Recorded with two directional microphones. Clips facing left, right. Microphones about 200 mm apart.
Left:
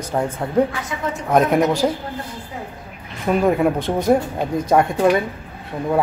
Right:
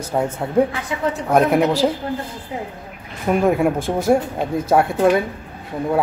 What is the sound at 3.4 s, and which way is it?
Speech, 5° right (ahead or behind).